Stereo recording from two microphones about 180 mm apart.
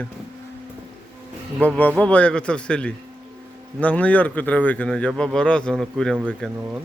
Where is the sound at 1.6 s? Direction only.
10° left (ahead or behind).